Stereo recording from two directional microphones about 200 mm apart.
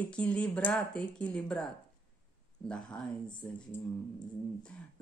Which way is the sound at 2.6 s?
5° left (ahead or behind).